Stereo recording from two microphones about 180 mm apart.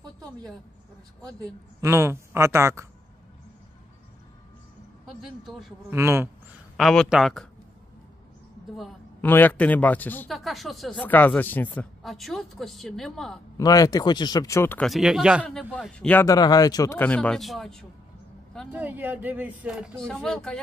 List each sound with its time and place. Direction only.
1.4 s speech: 15° right (ahead or behind)
5.4 s speech: centre (ahead or behind)
5.9 s speech: 15° right (ahead or behind)
6.8 s speech: centre (ahead or behind)
8.7 s a sound: centre (ahead or behind)
9.3 s speech: 10° left (ahead or behind)
13.6 s speech: 20° left (ahead or behind)
14.9 s speech: 5° right (ahead or behind)
16.3 s speech: 20° left (ahead or behind); by 17.8 s centre (ahead or behind)
18.7 s speech: 10° right (ahead or behind)